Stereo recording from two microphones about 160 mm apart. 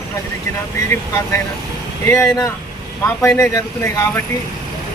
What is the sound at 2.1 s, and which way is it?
Speech, 15° left (ahead or behind).